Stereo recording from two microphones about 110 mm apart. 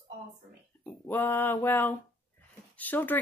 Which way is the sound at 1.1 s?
20° left (ahead or behind).